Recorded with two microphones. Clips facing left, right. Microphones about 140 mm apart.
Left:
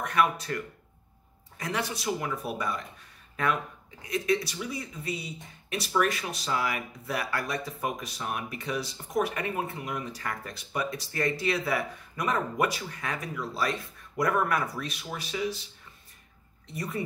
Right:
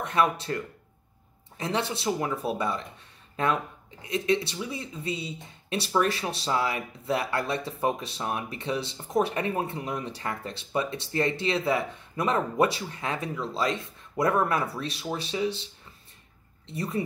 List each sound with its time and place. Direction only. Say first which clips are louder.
0.0 s speech: right 1 dB; 25° right (ahead or behind)
1.6 s speech: right 3 dB; 25° right (ahead or behind)
16.6 s speech: right 4 dB; 30° right (ahead or behind)